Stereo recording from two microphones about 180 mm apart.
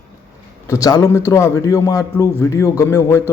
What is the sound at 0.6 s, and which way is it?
Speech, 20° left (ahead or behind).